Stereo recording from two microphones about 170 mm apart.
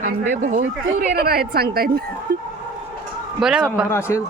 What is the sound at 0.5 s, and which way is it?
Speech, 60° right (ahead or behind).